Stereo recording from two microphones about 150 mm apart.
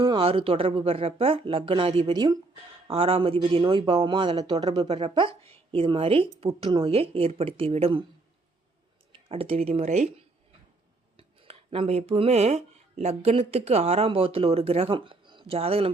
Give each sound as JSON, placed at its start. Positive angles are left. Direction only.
{"t": 0.0, "sound": "a woman's voice", "side_deg": -35}
{"t": 2.9, "sound": "a woman's voice", "side_deg": -40}
{"t": 9.1, "sound": "speech", "side_deg": -40}
{"t": 11.2, "sound": "speech", "side_deg": -40}